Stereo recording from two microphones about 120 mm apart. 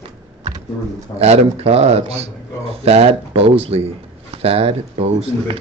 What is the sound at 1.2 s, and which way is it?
Speech, 55° right (ahead or behind).